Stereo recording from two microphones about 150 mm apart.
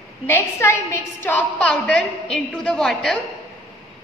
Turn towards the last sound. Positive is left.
turn(degrees=0)  # may be behind; listen again after turning